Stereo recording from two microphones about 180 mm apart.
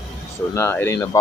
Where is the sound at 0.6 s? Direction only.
15° left (ahead or behind).